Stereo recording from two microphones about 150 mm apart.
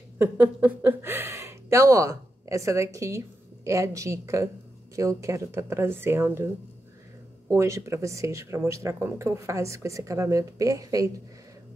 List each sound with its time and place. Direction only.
0.2 s speech: 10° right (ahead or behind)